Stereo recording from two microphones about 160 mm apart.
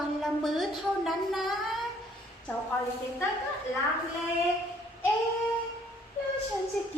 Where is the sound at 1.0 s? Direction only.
Centre (ahead or behind).